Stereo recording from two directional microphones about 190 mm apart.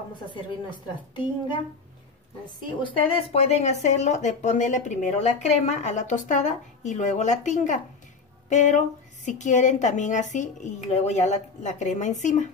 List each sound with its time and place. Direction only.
0.3 s a woman's voice: 25° left (ahead or behind)
2.8 s speech: 30° left (ahead or behind)